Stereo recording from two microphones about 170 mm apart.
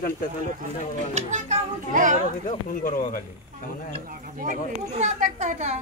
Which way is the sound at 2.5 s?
50° left (ahead or behind).